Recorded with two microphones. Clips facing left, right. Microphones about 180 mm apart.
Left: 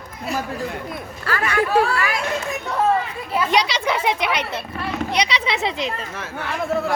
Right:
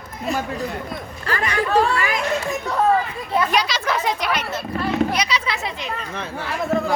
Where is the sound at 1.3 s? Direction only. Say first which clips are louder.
Left 1 dB; 15° right (ahead or behind).